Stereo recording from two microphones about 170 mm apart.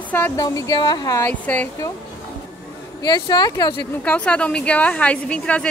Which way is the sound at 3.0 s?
25° left (ahead or behind).